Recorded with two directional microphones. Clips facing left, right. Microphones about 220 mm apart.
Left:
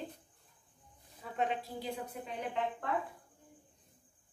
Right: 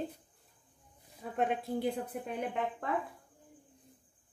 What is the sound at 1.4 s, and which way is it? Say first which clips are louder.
Speech: right 5 dB; 55° right (ahead or behind).